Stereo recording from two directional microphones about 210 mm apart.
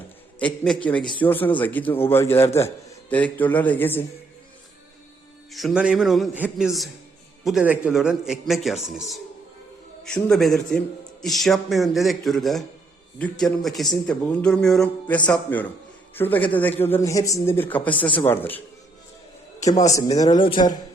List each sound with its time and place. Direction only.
0.3 s a man's voice: 5° left (ahead or behind)
5.5 s a man's voice: centre (ahead or behind)
19.9 s a man's voice: 15° left (ahead or behind)